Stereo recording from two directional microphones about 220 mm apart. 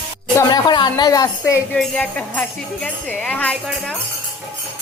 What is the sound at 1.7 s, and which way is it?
Speech, centre (ahead or behind).